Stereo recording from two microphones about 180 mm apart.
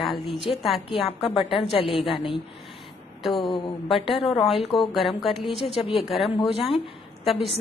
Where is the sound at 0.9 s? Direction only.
30° left (ahead or behind).